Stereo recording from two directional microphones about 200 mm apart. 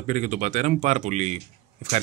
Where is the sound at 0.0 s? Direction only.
35° right (ahead or behind).